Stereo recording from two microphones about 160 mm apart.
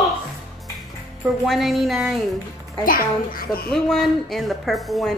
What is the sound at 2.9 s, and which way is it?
Speech, 65° left (ahead or behind).